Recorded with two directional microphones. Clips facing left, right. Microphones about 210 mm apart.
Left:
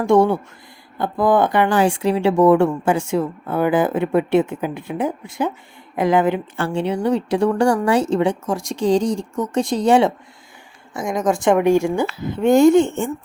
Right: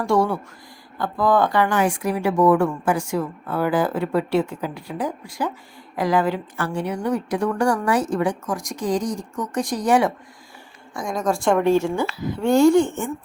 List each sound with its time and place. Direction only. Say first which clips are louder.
0.0 s a woman's voice: left 5 dB; 25° left (ahead or behind)